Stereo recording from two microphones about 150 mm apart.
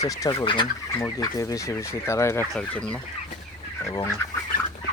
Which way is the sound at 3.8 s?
20° left (ahead or behind).